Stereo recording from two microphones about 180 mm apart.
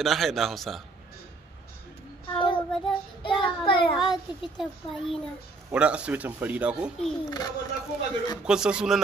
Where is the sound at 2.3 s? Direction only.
30° left (ahead or behind).